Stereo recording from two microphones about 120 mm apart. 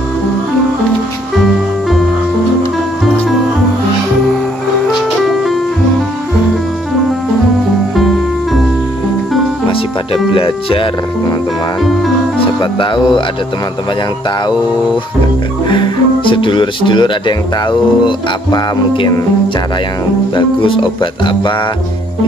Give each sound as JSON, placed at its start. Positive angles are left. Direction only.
{"t": 5.3, "sound": "music", "side_deg": 0}
{"t": 10.3, "sound": "speech", "side_deg": 50}
{"t": 12.5, "sound": "speech", "side_deg": 45}
{"t": 15.7, "sound": "speech", "side_deg": 45}
{"t": 20.3, "sound": "speech", "side_deg": 45}